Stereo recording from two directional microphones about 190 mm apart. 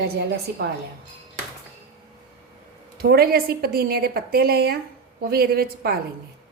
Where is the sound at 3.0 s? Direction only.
55° right (ahead or behind).